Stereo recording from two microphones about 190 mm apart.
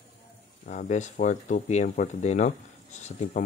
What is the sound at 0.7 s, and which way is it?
Speech, 40° left (ahead or behind).